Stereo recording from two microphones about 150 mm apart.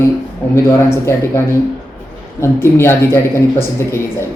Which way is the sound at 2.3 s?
15° left (ahead or behind).